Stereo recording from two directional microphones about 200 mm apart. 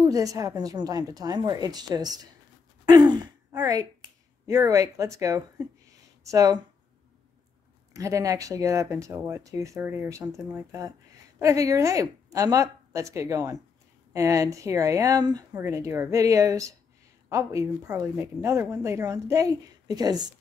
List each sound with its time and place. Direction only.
0.0 s a woman's voice: 15° right (ahead or behind)
7.9 s speech: 15° right (ahead or behind)